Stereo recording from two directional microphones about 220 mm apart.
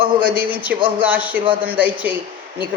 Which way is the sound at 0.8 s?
25° right (ahead or behind).